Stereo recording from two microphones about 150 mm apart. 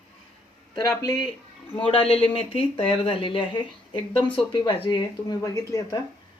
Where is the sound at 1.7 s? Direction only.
40° left (ahead or behind).